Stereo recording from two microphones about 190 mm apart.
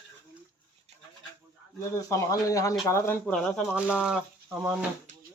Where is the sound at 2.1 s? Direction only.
15° left (ahead or behind).